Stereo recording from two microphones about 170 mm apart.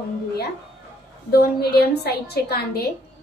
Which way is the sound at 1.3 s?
70° left (ahead or behind).